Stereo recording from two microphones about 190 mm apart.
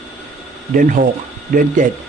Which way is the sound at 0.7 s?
45° right (ahead or behind).